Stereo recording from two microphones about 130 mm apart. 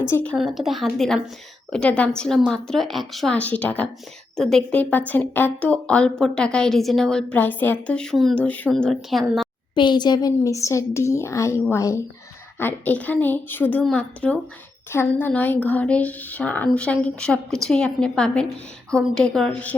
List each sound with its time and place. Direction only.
0.1 s a woman's voice: 10° left (ahead or behind)
0.3 s a woman's voice: centre (ahead or behind)
8.4 s a woman's voice: 10° left (ahead or behind)
8.7 s speech: centre (ahead or behind)
9.7 s a woman's voice: 35° left (ahead or behind); by 19.7 s 10° left (ahead or behind)